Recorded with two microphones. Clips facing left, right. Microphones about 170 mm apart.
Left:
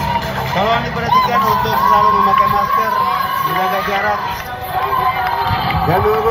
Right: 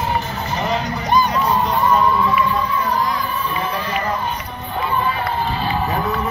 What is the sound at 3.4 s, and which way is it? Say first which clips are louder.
Run: left 6 dB; 90° left.